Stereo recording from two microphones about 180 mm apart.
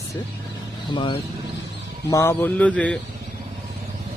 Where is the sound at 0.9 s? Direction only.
25° left (ahead or behind).